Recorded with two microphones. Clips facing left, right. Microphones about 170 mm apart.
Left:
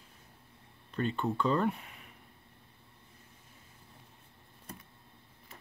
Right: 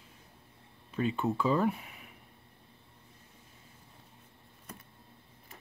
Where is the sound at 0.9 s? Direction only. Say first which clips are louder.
Right 2 dB; 5° right (ahead or behind).